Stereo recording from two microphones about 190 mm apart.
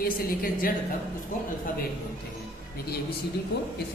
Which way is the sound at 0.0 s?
50° left (ahead or behind).